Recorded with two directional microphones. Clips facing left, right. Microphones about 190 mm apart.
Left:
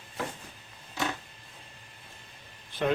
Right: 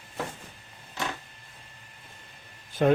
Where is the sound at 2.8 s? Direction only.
40° right (ahead or behind).